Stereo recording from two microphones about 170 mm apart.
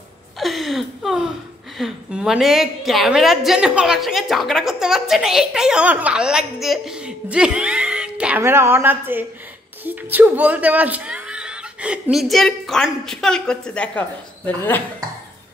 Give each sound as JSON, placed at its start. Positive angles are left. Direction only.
{"t": 0.4, "sound": "a woman's voice", "side_deg": 0}